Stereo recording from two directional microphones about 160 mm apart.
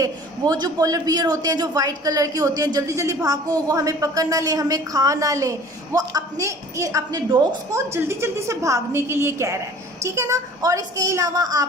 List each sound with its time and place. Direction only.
0.0 s a man's voice: 25° right (ahead or behind)